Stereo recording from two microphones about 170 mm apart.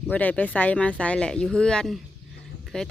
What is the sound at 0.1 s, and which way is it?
Speech, 10° left (ahead or behind).